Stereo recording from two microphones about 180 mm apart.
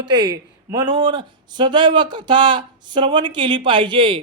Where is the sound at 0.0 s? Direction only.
25° right (ahead or behind).